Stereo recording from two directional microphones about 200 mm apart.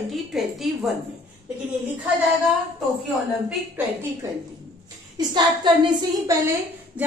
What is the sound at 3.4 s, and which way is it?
Speech, 10° right (ahead or behind).